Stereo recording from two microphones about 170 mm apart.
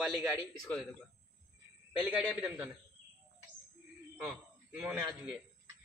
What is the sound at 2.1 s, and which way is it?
Speech, 5° right (ahead or behind).